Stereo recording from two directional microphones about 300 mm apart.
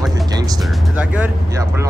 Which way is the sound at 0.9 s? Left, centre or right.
Centre.